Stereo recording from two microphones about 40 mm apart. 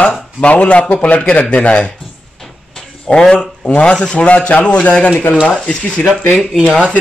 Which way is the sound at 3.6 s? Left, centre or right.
Left.